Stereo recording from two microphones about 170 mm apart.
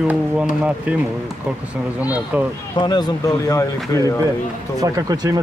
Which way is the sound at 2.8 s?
25° left (ahead or behind).